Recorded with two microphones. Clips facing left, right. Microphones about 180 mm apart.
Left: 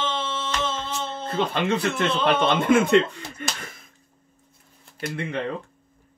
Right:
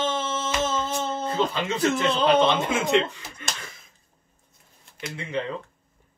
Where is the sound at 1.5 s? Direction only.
60° left (ahead or behind).